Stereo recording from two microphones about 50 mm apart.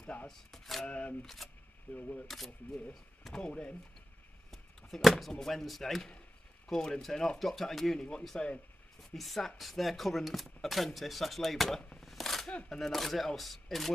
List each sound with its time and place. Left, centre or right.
0.0 s speech: left
0.5 s speech: centre
0.8 s speech: left
1.2 s speech: centre
2.0 s speech: left
2.2 s speech: centre
4.5 s speech: centre
8.3 s speech: centre
9.1 s speech: centre
12.0 s a sound: centre
12.6 s speech: centre